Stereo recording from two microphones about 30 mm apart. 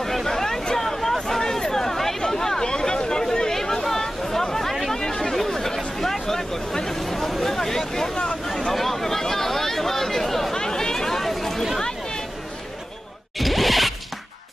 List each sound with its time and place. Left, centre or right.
0.0 s a sound: centre
0.7 s hubbub: centre
1.5 s chatter: centre
5.3 s hubbub: centre
7.0 s vehicle: centre
8.7 s a sound: centre
10.5 s chatter: left
13.4 s zipper: centre